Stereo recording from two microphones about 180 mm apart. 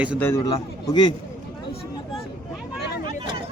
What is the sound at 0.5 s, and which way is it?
Speech, 25° left (ahead or behind).